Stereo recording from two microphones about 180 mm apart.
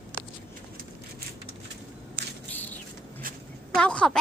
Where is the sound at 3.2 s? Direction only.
50° right (ahead or behind).